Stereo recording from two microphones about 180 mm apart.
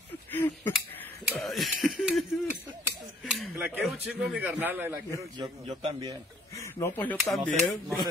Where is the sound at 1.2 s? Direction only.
Centre (ahead or behind).